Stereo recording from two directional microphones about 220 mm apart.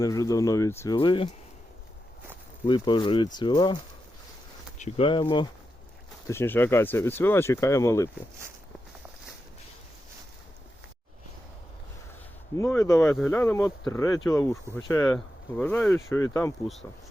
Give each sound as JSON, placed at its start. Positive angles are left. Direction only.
{"t": 0.0, "sound": "speech", "side_deg": 15}
{"t": 0.9, "sound": "speech", "side_deg": 25}
{"t": 2.6, "sound": "speech", "side_deg": 20}
{"t": 4.8, "sound": "speech", "side_deg": 30}
{"t": 6.2, "sound": "speech", "side_deg": 10}
{"t": 12.5, "sound": "speech", "side_deg": 15}